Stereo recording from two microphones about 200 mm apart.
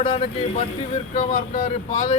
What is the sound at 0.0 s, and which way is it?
Speech, 30° left (ahead or behind).